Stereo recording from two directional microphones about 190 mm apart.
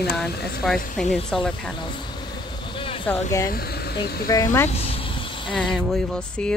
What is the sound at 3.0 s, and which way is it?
Speech, 15° left (ahead or behind).